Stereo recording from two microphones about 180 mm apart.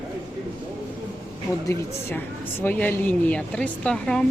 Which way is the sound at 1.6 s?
15° left (ahead or behind).